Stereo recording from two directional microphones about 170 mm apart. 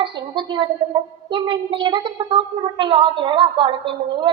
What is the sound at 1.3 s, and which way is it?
A woman's voice, 25° right (ahead or behind).